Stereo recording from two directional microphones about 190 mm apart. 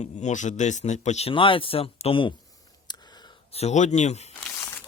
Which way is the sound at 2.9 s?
20° left (ahead or behind).